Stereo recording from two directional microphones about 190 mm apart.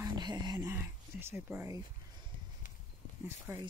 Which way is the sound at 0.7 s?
10° right (ahead or behind).